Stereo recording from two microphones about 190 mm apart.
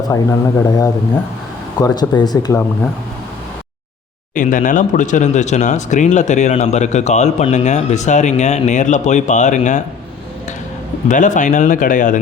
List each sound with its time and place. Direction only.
0.1 s a man's voice: 15° left (ahead or behind)
4.4 s speech: 45° left (ahead or behind)
11.1 s speech: 40° left (ahead or behind)